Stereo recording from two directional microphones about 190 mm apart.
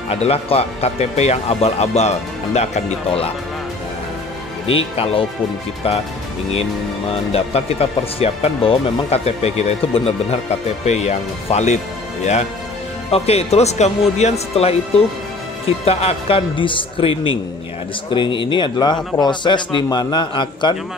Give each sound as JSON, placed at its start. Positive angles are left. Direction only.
{"t": 0.1, "sound": "speech", "side_deg": 30}
{"t": 4.6, "sound": "a man's voice", "side_deg": 30}
{"t": 7.1, "sound": "speech", "side_deg": 30}
{"t": 13.1, "sound": "a man's voice", "side_deg": 30}